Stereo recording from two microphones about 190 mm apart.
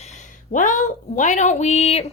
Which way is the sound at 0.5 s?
40° left (ahead or behind).